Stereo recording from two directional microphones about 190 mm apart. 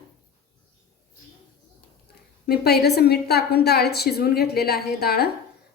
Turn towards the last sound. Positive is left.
turn(degrees=55)  # may be behind; listen again after turning